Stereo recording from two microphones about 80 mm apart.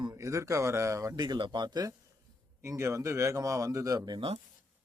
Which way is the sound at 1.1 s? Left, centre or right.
Right.